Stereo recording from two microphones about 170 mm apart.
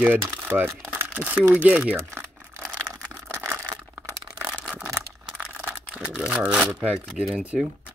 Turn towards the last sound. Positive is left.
turn(degrees=-5)  # may be behind; listen again after turning